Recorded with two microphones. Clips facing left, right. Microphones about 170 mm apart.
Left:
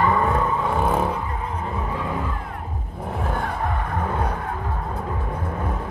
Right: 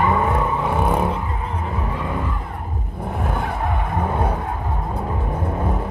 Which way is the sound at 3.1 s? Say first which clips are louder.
Right 1 dB; 5° right (ahead or behind).